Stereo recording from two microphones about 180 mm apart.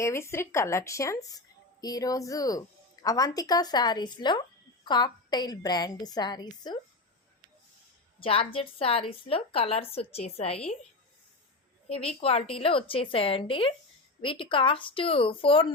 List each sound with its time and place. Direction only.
0.0 s a woman's voice: 15° left (ahead or behind)
8.2 s a woman's voice: 30° left (ahead or behind)
11.9 s a woman's voice: 35° left (ahead or behind)